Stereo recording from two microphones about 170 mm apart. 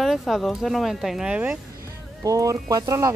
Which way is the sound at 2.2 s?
20° right (ahead or behind).